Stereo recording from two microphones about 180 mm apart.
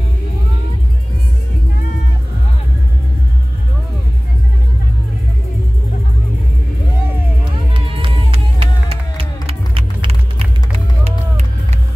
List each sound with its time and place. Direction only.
7.7 s music: 30° right (ahead or behind)